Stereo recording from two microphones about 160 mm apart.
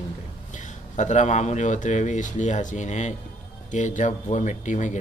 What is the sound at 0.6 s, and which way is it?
Speech, 50° left (ahead or behind).